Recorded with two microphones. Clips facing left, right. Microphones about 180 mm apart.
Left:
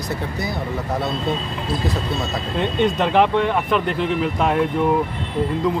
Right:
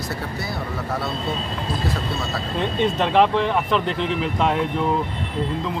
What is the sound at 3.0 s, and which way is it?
Speech, centre (ahead or behind).